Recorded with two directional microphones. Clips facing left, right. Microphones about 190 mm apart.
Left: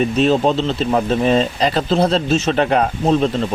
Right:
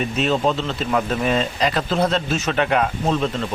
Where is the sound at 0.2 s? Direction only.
35° left (ahead or behind).